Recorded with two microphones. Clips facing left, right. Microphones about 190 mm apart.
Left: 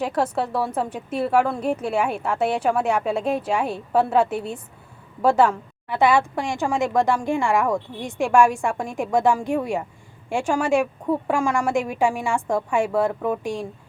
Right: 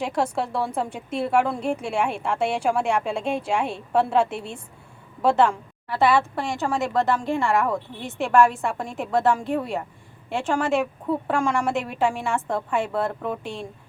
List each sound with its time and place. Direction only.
0.0 s a woman's voice: 5° left (ahead or behind)